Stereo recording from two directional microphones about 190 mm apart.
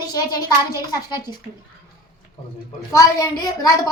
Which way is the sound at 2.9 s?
20° left (ahead or behind).